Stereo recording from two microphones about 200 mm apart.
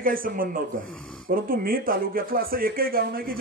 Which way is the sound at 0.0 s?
45° right (ahead or behind).